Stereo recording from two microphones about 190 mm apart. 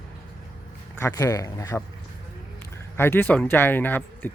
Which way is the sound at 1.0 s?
15° left (ahead or behind).